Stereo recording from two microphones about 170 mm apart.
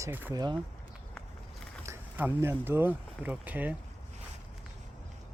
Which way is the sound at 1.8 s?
15° right (ahead or behind).